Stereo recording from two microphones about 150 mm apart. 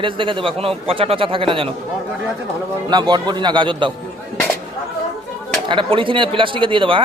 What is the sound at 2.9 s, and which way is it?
A man's voice, 30° right (ahead or behind).